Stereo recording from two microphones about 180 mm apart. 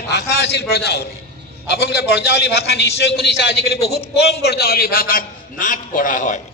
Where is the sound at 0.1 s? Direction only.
65° left (ahead or behind).